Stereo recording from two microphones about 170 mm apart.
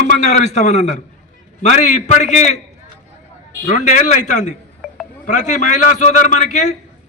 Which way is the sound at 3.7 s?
45° left (ahead or behind).